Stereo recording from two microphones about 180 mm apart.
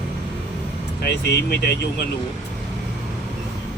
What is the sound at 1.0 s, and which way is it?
Speech, 65° left (ahead or behind).